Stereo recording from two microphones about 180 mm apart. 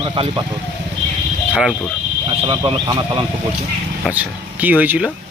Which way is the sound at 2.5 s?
30° right (ahead or behind).